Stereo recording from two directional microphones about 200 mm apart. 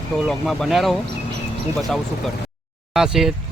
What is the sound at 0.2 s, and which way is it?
Speech, centre (ahead or behind).